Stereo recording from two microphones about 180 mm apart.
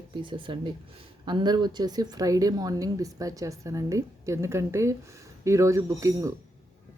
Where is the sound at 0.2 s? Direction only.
25° right (ahead or behind).